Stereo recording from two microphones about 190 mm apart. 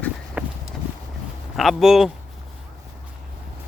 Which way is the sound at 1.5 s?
Centre (ahead or behind).